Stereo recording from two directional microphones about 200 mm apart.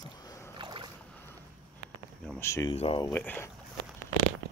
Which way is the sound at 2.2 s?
10° left (ahead or behind).